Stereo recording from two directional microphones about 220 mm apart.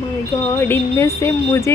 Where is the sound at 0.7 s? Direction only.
10° left (ahead or behind).